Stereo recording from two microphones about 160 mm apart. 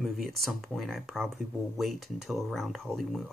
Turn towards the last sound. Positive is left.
turn(degrees=0)  # may be behind; listen again after turning